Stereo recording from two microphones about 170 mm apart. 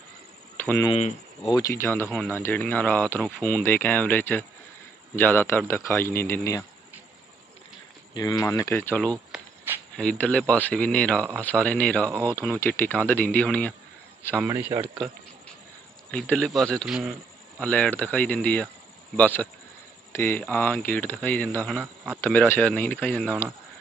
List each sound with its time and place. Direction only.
0.5 s a sound: 10° left (ahead or behind)
0.9 s speech: 40° left (ahead or behind)
1.5 s speech: 20° left (ahead or behind)
8.1 s speech: 25° left (ahead or behind)
9.3 s a sound: 10° right (ahead or behind)
9.9 s a man's voice: 5° left (ahead or behind)
14.4 s a man's voice: 10° right (ahead or behind)
16.1 s speech: 5° left (ahead or behind)
21.8 s a man's voice: 10° right (ahead or behind)
22.2 s speech: 10° left (ahead or behind)